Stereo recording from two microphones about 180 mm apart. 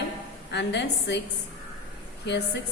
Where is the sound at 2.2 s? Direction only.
70° left (ahead or behind).